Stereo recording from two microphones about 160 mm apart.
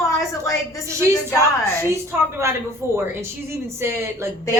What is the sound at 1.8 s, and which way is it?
A woman's voice, 15° right (ahead or behind).